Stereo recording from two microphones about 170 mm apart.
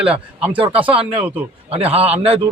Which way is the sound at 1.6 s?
35° right (ahead or behind).